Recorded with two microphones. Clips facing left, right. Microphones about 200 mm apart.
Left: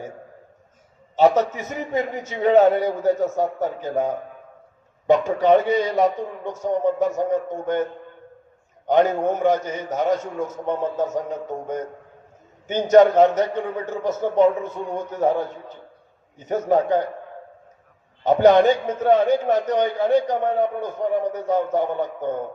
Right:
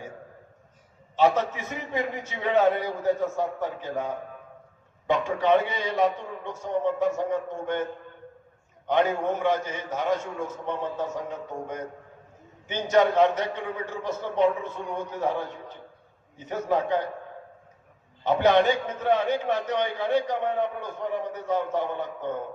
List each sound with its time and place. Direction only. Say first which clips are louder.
1.1 s a man's voice: left 5 dB; 40° left (ahead or behind)
8.9 s a man's voice: left 5 dB; 40° left (ahead or behind)
12.6 s a man's voice: left 8 dB; 45° left (ahead or behind)
16.5 s a man's voice: left 6 dB; 45° left (ahead or behind)
18.2 s a man's voice: left 6 dB; 45° left (ahead or behind)